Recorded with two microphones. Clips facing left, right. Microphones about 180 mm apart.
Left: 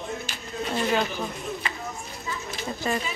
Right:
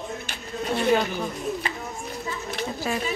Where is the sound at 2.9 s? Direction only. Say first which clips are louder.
Left 2 dB; 5° right (ahead or behind).